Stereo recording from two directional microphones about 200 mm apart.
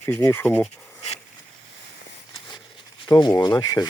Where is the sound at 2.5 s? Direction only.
20° left (ahead or behind).